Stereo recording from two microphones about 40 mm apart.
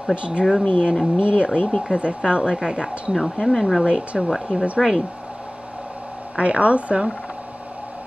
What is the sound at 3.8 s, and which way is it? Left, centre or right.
Speech, right.